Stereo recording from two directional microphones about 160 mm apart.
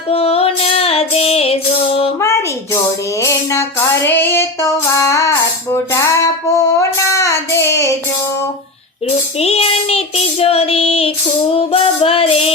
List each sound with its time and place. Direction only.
0.1 s female singing: 40° left (ahead or behind)
3.2 s female singing: 20° left (ahead or behind)
9.0 s child singing: 40° left (ahead or behind)
11.5 s music: 35° left (ahead or behind)